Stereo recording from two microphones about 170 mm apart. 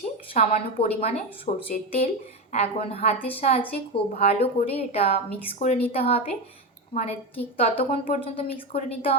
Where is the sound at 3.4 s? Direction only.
35° left (ahead or behind).